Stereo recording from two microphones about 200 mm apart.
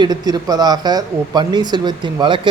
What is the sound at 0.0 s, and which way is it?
Speech, 20° right (ahead or behind).